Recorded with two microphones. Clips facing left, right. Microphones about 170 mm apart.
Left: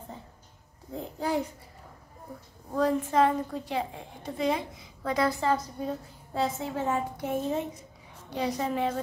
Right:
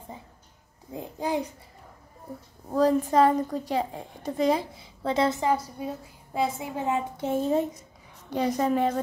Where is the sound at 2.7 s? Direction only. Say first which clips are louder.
Right 4 dB; 35° right (ahead or behind); by 7.0 s 15° right (ahead or behind).